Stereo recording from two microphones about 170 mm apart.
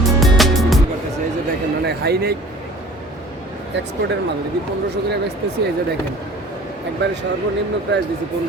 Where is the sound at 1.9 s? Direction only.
70° right (ahead or behind).